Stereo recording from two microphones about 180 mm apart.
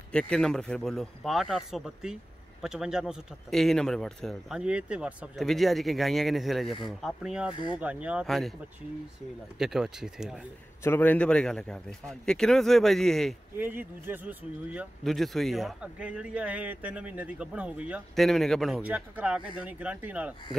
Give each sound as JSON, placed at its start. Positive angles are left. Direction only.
{"t": 0.1, "sound": "speech", "side_deg": 5}
{"t": 7.5, "sound": "speech", "side_deg": 25}
{"t": 7.8, "sound": "speech", "side_deg": -5}
{"t": 9.6, "sound": "speech", "side_deg": -5}
{"t": 10.8, "sound": "speech", "side_deg": 10}
{"t": 13.6, "sound": "speech", "side_deg": -10}